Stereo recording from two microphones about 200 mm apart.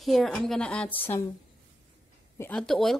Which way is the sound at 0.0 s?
Centre (ahead or behind).